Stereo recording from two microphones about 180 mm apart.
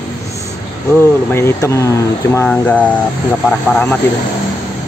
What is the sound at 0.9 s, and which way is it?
Speech, 15° left (ahead or behind).